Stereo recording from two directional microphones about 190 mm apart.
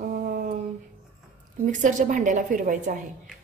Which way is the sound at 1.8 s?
40° right (ahead or behind).